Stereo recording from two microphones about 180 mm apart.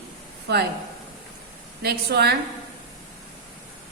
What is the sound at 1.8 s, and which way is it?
Speech, 60° right (ahead or behind).